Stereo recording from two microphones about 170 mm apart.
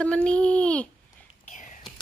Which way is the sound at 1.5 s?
50° left (ahead or behind).